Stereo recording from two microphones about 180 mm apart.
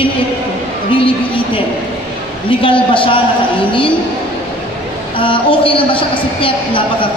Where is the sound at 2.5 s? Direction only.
30° left (ahead or behind).